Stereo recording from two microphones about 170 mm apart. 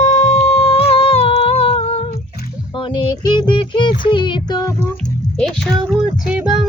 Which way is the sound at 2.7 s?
25° left (ahead or behind).